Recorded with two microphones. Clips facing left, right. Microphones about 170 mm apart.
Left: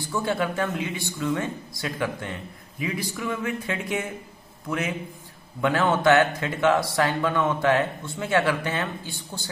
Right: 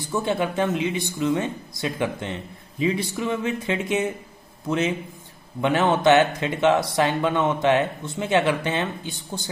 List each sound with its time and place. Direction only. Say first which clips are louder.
0.0 s speech: right 2 dB; 20° right (ahead or behind)